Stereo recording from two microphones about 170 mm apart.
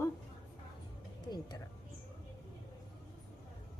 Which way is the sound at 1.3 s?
25° left (ahead or behind).